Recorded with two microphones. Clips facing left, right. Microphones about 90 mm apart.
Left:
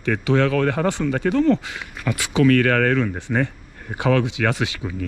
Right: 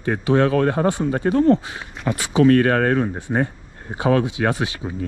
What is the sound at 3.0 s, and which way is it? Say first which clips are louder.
Speech: even; 90° left.